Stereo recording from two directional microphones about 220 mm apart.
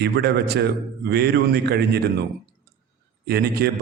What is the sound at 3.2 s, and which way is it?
Speech, 45° right (ahead or behind).